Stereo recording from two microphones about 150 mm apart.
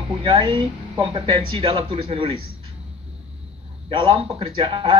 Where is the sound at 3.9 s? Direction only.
35° right (ahead or behind).